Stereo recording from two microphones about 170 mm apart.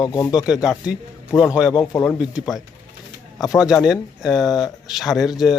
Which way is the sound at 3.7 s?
Centre (ahead or behind).